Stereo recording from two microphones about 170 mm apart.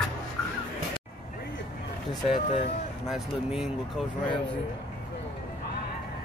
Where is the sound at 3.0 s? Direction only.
Centre (ahead or behind).